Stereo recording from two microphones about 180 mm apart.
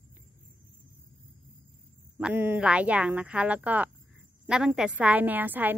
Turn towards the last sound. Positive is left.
turn(degrees=-10)  # may be behind; listen again after turning